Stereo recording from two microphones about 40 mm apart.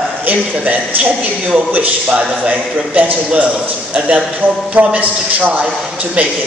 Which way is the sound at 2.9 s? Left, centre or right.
Right.